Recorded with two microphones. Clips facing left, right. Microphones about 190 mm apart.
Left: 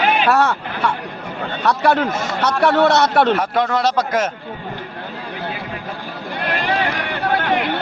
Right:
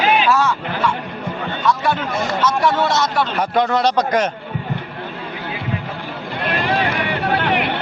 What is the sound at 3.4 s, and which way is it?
Speech, centre (ahead or behind).